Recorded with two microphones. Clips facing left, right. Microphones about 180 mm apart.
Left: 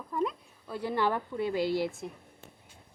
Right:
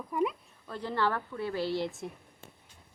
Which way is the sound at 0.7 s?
10° left (ahead or behind).